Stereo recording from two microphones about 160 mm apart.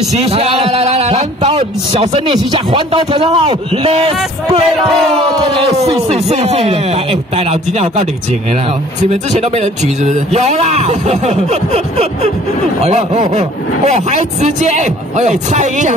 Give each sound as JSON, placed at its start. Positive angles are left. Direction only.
{"t": 0.2, "sound": "a man's voice", "side_deg": -40}